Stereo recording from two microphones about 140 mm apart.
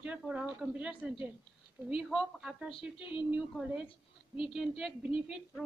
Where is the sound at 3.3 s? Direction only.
10° right (ahead or behind).